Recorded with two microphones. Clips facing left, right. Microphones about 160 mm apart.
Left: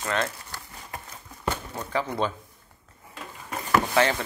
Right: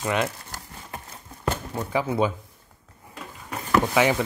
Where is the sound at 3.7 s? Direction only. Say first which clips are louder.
Right 2 dB; 10° right (ahead or behind).